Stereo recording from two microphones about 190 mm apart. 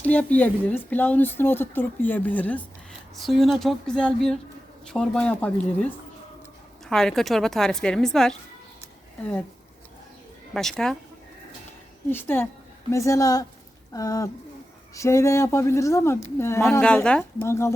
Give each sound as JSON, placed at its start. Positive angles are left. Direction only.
{"t": 0.0, "sound": "a woman's voice", "side_deg": 10}
{"t": 10.5, "sound": "a woman's voice", "side_deg": 0}
{"t": 12.1, "sound": "speech", "side_deg": 10}